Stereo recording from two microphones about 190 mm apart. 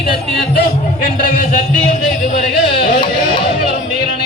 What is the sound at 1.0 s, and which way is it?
Speech, 50° left (ahead or behind).